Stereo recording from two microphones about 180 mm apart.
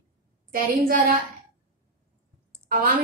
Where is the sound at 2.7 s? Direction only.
50° right (ahead or behind).